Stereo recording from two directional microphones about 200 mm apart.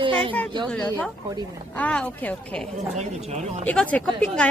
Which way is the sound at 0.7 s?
10° left (ahead or behind).